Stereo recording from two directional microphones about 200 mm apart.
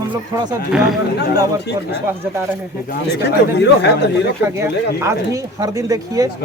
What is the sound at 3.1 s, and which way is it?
Speech, 55° left (ahead or behind).